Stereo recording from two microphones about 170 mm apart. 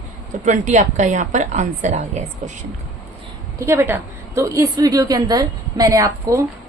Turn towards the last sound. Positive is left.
turn(degrees=-15)  # may be behind; listen again after turning